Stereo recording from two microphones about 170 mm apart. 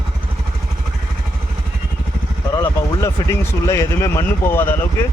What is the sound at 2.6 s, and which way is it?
Speech, 20° left (ahead or behind).